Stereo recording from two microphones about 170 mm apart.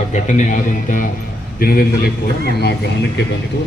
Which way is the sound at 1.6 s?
60° left (ahead or behind).